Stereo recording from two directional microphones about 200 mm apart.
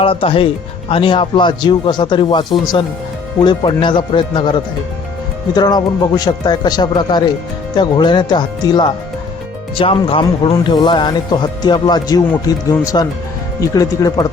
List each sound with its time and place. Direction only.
0.0 s speech: 25° left (ahead or behind)
5.5 s speech: 20° left (ahead or behind)